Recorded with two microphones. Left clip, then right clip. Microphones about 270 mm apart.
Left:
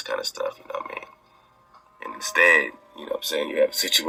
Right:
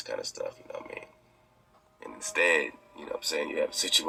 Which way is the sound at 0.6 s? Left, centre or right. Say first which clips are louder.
Left 8 dB; left.